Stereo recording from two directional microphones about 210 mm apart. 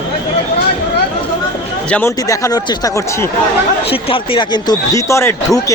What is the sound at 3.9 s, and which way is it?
Speech, 25° left (ahead or behind).